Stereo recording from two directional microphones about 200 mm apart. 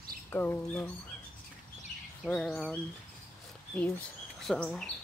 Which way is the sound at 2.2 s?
Centre (ahead or behind).